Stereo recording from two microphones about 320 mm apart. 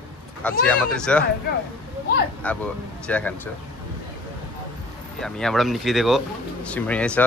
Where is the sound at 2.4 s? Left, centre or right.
Centre.